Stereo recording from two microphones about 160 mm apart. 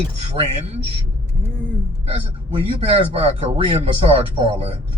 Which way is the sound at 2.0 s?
35° right (ahead or behind).